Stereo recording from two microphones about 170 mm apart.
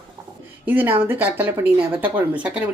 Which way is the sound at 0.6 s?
10° right (ahead or behind).